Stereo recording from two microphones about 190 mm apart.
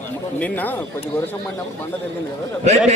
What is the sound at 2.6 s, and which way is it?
Speech, 35° right (ahead or behind).